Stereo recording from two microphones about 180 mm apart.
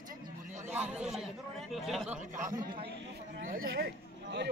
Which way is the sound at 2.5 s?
25° right (ahead or behind).